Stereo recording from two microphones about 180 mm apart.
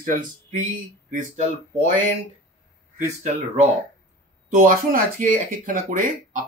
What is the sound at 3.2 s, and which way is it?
Speech, 35° right (ahead or behind).